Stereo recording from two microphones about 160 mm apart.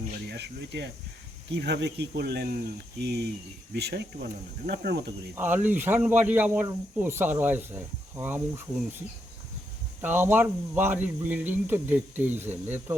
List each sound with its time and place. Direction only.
0.1 s speech: 90° right
5.3 s speech: 10° right (ahead or behind)
10.0 s speech: 15° right (ahead or behind)